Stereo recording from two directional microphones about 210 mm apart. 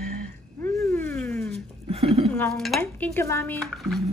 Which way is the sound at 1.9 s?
30° right (ahead or behind).